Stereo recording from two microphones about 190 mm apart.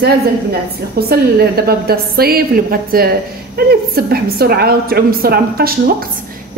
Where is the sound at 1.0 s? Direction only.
55° right (ahead or behind).